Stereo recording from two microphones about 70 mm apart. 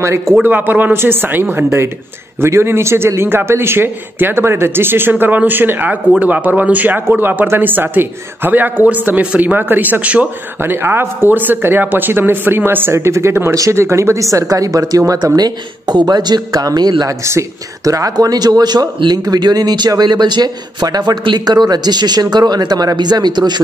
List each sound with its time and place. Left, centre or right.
0.4 s a man's voice: right
10.6 s speech: right
15.3 s a man's voice: right
17.2 s speech: right
17.8 s a man's voice: right